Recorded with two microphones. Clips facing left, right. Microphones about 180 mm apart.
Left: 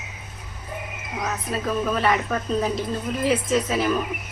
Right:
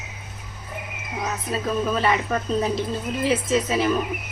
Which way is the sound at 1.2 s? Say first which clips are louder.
Even; centre (ahead or behind).